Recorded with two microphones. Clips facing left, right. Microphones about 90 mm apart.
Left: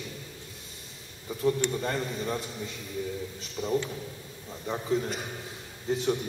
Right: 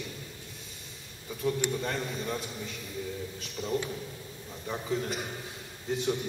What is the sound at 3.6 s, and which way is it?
Speech, 10° right (ahead or behind).